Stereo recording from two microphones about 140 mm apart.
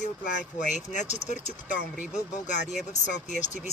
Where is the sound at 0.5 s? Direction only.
60° left (ahead or behind).